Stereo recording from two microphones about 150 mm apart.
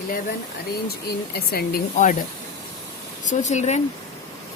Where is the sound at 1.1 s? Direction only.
85° left.